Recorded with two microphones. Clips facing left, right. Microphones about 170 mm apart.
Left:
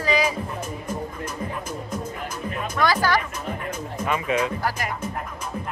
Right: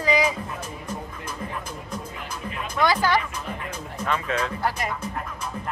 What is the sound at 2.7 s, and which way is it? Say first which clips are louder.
Speech: even; 20° right (ahead or behind).